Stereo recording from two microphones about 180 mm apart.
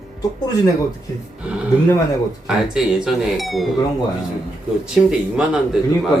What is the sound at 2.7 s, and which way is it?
Speech, centre (ahead or behind).